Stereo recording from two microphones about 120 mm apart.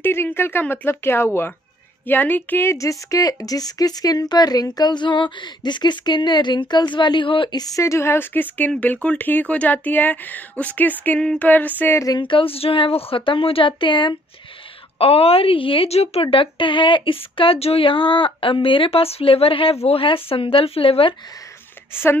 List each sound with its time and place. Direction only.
0.0 s speech: 20° left (ahead or behind); by 7.6 s 45° left (ahead or behind)
7.6 s speech: 25° left (ahead or behind)
12.2 s a woman's voice: 45° left (ahead or behind)
15.0 s a woman's voice: 55° left (ahead or behind)